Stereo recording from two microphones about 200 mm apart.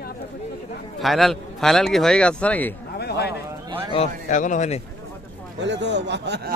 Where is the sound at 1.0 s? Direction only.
Centre (ahead or behind).